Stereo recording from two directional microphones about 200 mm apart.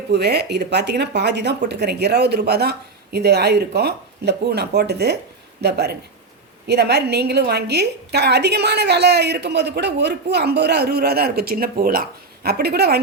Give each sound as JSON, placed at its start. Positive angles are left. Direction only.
{"t": 0.1, "sound": "a woman's voice", "side_deg": -55}